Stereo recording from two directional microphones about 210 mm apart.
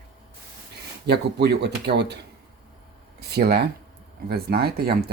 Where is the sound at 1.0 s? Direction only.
50° right (ahead or behind).